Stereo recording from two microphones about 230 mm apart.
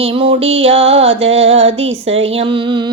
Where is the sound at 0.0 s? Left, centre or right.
Right.